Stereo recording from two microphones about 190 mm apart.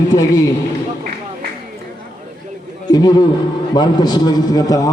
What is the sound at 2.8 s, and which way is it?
A man's voice, 20° left (ahead or behind).